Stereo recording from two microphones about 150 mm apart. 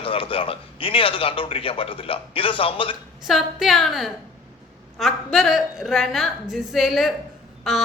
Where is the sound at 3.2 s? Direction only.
Centre (ahead or behind).